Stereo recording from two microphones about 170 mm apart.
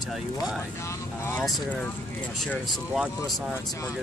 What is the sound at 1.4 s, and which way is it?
Speech, centre (ahead or behind).